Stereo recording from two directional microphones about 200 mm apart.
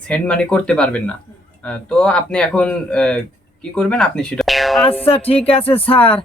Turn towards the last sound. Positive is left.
turn(degrees=25)  # may be behind; listen again after turning